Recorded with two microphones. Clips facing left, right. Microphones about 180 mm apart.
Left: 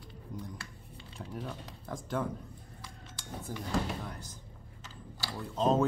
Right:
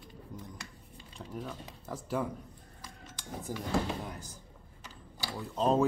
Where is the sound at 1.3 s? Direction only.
Centre (ahead or behind).